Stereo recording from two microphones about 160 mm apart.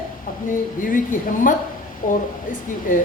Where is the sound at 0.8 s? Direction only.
60° left (ahead or behind).